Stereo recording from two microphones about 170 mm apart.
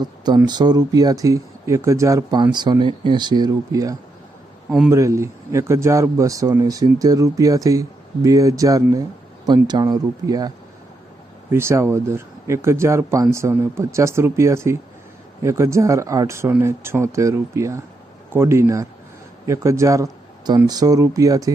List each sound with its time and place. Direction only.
0.0 s speech: 25° right (ahead or behind)
11.5 s speech: 15° right (ahead or behind)